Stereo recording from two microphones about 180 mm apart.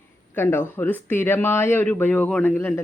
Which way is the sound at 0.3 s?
10° left (ahead or behind).